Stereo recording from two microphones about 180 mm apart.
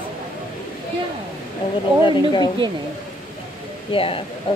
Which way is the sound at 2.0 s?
25° left (ahead or behind).